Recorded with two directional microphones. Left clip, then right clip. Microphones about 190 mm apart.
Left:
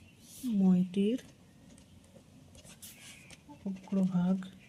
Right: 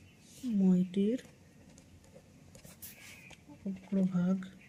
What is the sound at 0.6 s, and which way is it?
Speech, 15° left (ahead or behind).